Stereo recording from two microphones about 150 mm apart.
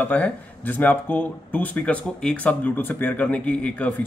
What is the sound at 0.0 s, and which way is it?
Speech, 10° left (ahead or behind).